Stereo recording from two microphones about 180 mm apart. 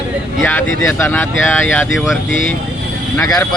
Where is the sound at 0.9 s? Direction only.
10° left (ahead or behind).